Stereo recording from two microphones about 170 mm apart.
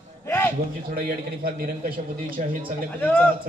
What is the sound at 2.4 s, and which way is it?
Speech, 45° right (ahead or behind).